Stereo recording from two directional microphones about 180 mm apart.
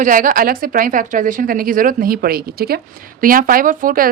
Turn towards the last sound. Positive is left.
turn(degrees=-50)  # may be behind; listen again after turning